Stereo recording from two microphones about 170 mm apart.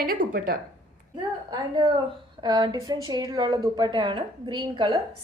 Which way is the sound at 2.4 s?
25° right (ahead or behind).